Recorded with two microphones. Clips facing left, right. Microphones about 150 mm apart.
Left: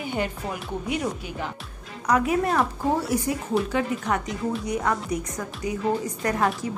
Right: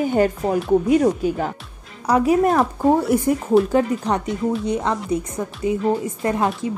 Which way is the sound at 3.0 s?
55° right (ahead or behind).